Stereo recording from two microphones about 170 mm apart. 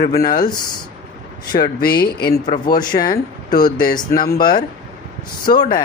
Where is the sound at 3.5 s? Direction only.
25° left (ahead or behind).